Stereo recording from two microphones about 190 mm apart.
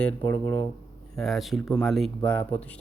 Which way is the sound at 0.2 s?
15° left (ahead or behind).